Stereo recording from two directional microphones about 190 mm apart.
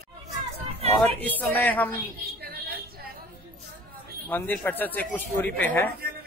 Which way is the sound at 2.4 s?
55° right (ahead or behind).